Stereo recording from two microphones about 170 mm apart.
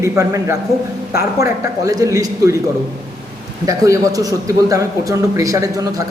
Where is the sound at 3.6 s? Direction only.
20° right (ahead or behind).